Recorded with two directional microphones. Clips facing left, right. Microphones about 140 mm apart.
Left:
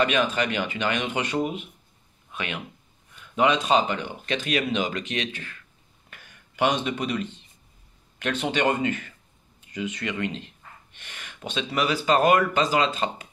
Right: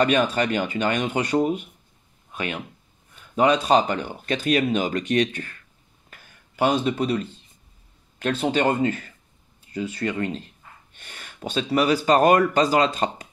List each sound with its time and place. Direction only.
0.0 s speech: 40° right (ahead or behind)
6.0 s a sound: 35° right (ahead or behind)
8.2 s speech: 35° right (ahead or behind)